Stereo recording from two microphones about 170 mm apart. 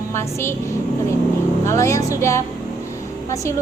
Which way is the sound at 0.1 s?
15° left (ahead or behind).